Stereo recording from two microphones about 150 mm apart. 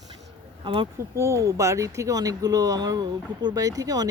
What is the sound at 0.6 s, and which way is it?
Speech, 35° right (ahead or behind).